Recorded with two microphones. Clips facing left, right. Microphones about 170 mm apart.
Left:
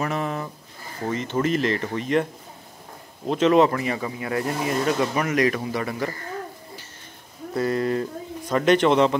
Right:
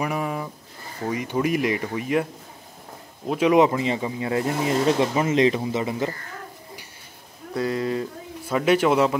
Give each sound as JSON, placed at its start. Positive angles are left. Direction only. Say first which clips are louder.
{"t": 0.0, "sound": "a sound", "louder": "even", "side_deg": -10}
{"t": 1.0, "sound": "speech", "louder": "even", "side_deg": -10}
{"t": 3.3, "sound": "speech", "louder": "even", "side_deg": -10}
{"t": 7.5, "sound": "speech", "louder": "left 2 dB", "side_deg": -5}